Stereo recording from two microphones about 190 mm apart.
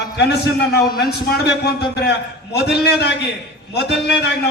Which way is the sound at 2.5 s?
60° left (ahead or behind).